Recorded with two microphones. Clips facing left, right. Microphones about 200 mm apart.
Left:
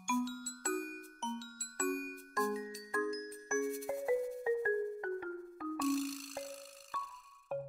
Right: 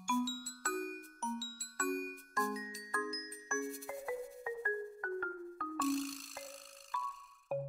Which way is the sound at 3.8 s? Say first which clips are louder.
Left 7 dB; 25° left (ahead or behind).